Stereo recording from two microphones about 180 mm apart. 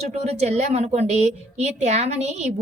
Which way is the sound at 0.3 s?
40° right (ahead or behind).